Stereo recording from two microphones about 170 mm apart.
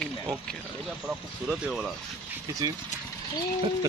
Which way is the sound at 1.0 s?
Centre (ahead or behind).